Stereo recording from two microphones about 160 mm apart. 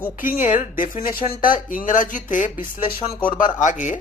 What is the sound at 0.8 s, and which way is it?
Speech, 60° left (ahead or behind).